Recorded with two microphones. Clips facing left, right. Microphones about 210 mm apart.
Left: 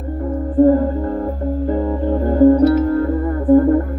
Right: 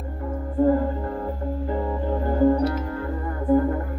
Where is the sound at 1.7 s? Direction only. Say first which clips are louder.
Left 7 dB; 40° left (ahead or behind).